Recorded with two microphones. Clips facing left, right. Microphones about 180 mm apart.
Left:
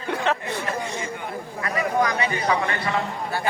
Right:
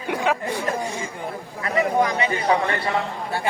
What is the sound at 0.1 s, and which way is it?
Chatter, 10° right (ahead or behind).